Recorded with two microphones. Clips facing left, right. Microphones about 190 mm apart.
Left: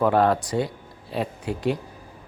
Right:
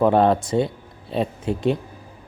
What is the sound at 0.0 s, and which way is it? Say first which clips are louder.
Speech: right 3 dB; 25° right (ahead or behind).